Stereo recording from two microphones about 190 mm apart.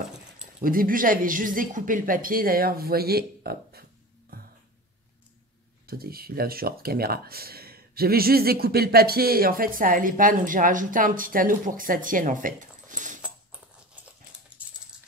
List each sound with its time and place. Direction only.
0.6 s speech: 45° right (ahead or behind)
4.3 s music: 50° right (ahead or behind)
5.9 s speech: 50° right (ahead or behind)